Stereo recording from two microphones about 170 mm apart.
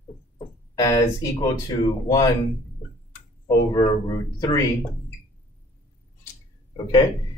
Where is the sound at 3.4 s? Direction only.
25° left (ahead or behind).